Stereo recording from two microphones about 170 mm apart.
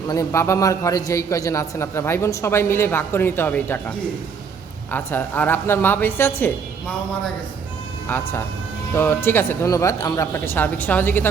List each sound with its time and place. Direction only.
0.1 s a man's voice: 20° left (ahead or behind)
8.0 s a man's voice: 15° left (ahead or behind)